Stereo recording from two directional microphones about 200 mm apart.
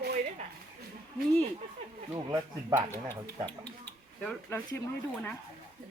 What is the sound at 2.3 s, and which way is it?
Speech, 15° right (ahead or behind).